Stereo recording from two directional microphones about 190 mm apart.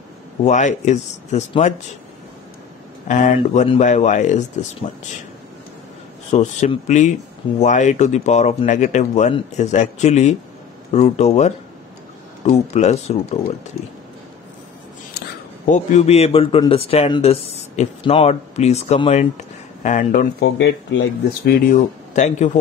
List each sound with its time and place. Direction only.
0.4 s speech: 40° left (ahead or behind)
3.1 s speech: 40° left (ahead or behind)
6.3 s speech: 35° left (ahead or behind)
15.7 s speech: 35° left (ahead or behind)